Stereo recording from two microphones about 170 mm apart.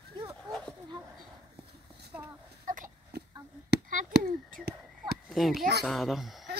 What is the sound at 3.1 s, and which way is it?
Chop, 75° right (ahead or behind).